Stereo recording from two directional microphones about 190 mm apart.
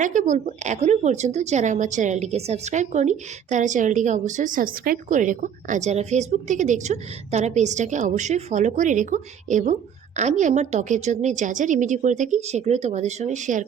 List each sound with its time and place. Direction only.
0.0 s speech: 40° right (ahead or behind)